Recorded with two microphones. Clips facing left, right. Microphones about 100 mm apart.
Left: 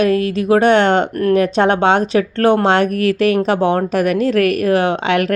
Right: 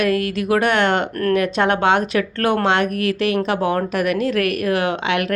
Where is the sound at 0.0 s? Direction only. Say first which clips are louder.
Left 4 dB; 30° left (ahead or behind).